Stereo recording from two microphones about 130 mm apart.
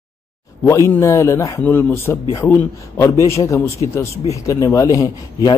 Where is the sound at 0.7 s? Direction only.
20° left (ahead or behind).